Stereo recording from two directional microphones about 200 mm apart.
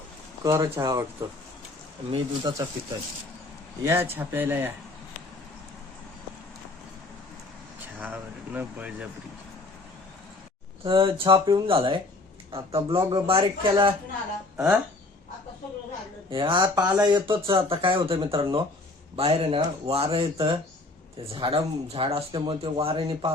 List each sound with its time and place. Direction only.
0.4 s speech: 15° right (ahead or behind)
2.0 s speech: 20° right (ahead or behind)
3.8 s speech: 10° right (ahead or behind)
7.9 s speech: 10° right (ahead or behind)
10.8 s speech: 25° right (ahead or behind)
14.5 s speech: 5° right (ahead or behind)
16.3 s speech: 25° right (ahead or behind)